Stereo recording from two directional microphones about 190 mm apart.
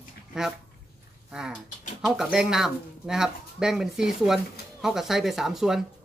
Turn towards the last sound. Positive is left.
turn(degrees=0)  # may be behind; listen again after turning